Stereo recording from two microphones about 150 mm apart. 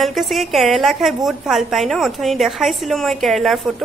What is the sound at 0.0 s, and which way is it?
A woman's voice, centre (ahead or behind).